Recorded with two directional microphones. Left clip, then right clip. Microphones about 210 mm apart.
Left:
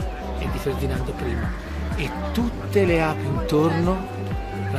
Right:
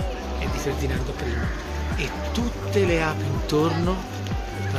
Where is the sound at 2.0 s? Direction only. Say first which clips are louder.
Left 2 dB; 40° left (ahead or behind).